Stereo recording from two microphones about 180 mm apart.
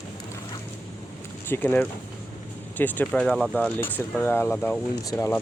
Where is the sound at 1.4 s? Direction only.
10° left (ahead or behind).